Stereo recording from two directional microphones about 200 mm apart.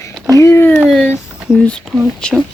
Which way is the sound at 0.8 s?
Centre (ahead or behind).